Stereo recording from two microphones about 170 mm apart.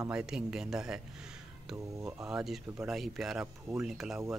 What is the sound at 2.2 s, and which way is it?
Speech, 5° right (ahead or behind).